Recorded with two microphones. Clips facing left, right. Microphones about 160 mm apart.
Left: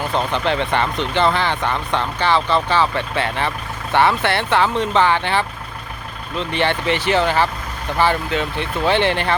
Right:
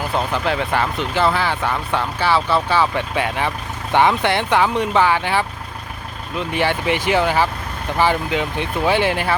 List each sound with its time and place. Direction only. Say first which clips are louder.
0.1 s speech: left 1 dB; 5° right (ahead or behind)